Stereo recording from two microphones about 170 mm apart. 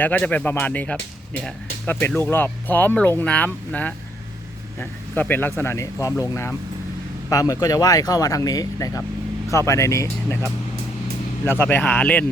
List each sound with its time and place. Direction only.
0.0 s speech: 10° left (ahead or behind)
11.4 s speech: 10° left (ahead or behind)